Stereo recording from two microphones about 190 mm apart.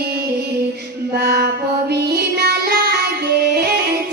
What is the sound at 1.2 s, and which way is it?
Child singing, 60° right (ahead or behind).